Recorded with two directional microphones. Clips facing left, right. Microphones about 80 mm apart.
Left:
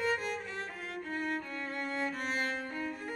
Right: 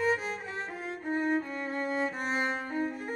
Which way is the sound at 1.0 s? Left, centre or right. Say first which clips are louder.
Right 8 dB; right.